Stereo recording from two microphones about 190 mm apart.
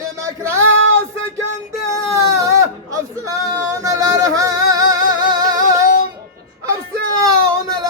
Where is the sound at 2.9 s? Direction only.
15° right (ahead or behind).